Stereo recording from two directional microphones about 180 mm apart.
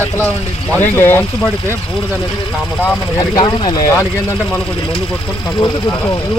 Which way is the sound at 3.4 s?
20° left (ahead or behind).